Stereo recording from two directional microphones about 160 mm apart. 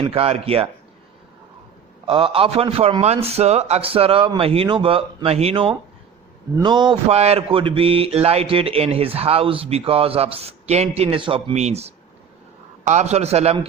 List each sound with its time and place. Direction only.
0.0 s speech: 35° right (ahead or behind)
2.0 s speech: 35° right (ahead or behind)
6.6 s speech: 30° right (ahead or behind)
7.1 s speech: 40° right (ahead or behind)